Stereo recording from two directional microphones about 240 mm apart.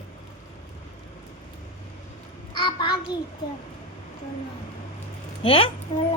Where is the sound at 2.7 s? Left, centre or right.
Centre.